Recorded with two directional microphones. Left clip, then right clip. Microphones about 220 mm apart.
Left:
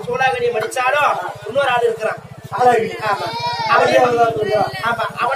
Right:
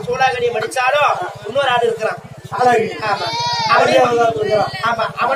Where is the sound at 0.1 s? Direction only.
15° right (ahead or behind).